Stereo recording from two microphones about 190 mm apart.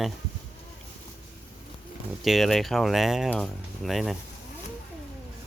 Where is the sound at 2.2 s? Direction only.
Centre (ahead or behind).